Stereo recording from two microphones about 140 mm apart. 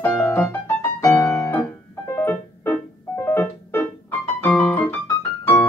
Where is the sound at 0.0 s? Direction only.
15° left (ahead or behind).